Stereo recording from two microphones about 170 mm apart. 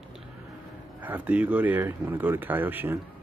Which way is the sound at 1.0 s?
10° right (ahead or behind).